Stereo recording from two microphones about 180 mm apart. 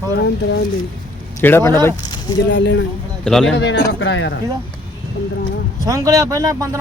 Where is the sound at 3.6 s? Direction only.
85° left.